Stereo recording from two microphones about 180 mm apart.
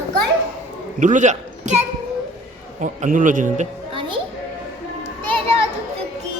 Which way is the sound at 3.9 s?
30° right (ahead or behind).